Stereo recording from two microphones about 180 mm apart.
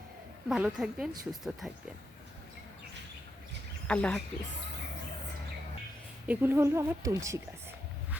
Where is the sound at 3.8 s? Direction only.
5° left (ahead or behind).